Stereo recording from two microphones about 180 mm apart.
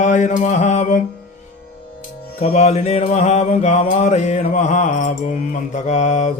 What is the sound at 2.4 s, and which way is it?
Mantra, 40° left (ahead or behind).